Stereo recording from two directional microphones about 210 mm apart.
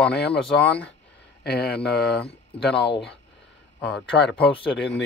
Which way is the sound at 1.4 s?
50° left (ahead or behind).